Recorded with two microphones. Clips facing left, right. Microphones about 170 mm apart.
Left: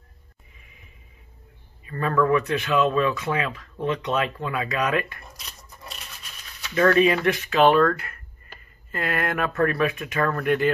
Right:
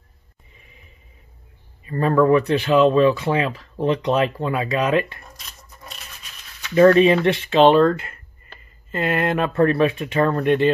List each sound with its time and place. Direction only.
1.9 s speech: 30° right (ahead or behind)
5.4 s a sound: centre (ahead or behind)
6.7 s speech: 30° right (ahead or behind)